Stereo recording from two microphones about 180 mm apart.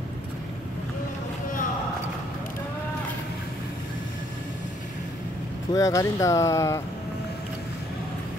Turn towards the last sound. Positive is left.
turn(degrees=15)  # may be behind; listen again after turning